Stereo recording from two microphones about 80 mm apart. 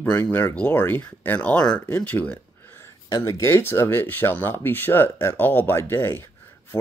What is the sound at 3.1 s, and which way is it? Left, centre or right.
Speech, left.